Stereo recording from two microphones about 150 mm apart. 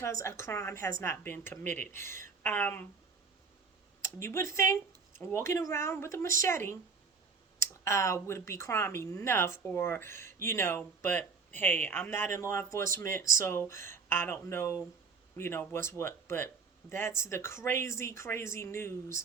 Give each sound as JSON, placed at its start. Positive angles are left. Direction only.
{"t": 0.0, "sound": "speech", "side_deg": 20}
{"t": 4.2, "sound": "speech", "side_deg": 20}